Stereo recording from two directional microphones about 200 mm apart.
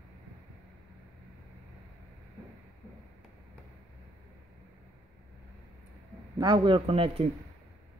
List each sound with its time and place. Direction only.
6.3 s a man's voice: 20° right (ahead or behind)